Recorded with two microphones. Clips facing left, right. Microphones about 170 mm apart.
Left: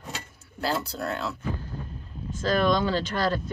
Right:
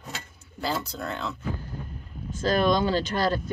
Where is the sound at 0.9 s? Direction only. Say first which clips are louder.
Left 2 dB; 5° left (ahead or behind).